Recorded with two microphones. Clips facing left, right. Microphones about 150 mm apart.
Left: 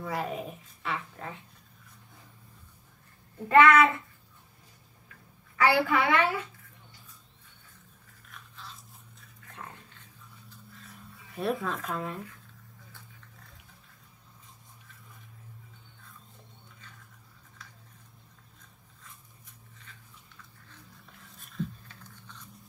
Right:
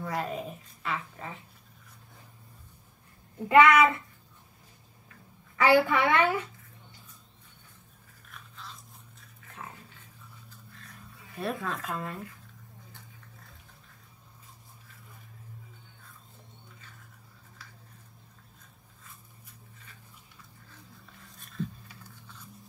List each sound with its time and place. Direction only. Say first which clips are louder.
0.0 s speech: even; centre (ahead or behind)
3.3 s speech: even; 15° right (ahead or behind)
5.6 s a woman's voice: right 2 dB; 20° right (ahead or behind)
9.4 s dog: right 1 dB; 5° right (ahead or behind)
10.7 s a sound: left 1 dB; centre (ahead or behind)
21.2 s dog: even; centre (ahead or behind)
21.8 s a sound: even; 10° right (ahead or behind)